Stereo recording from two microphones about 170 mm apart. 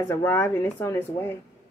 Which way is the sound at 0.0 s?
15° left (ahead or behind).